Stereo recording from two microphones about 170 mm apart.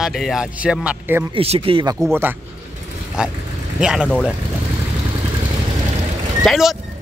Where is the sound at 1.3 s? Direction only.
35° right (ahead or behind).